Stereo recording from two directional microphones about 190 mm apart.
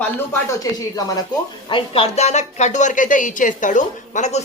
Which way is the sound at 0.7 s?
20° left (ahead or behind).